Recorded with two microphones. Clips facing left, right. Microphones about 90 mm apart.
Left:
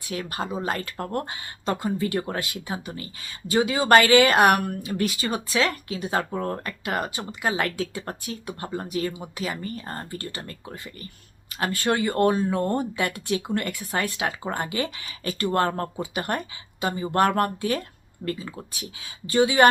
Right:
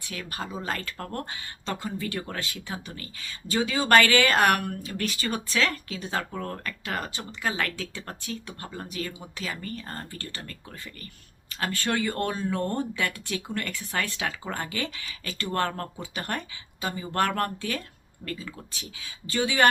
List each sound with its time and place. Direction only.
0.1 s speech: 25° left (ahead or behind)
16.0 s speech: 20° left (ahead or behind)